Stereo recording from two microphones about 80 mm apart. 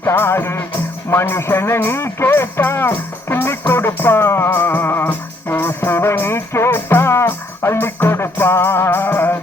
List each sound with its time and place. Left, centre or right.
0.0 s music: left